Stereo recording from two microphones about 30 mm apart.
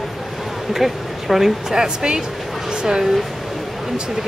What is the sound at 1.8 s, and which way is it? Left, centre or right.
Speech, right.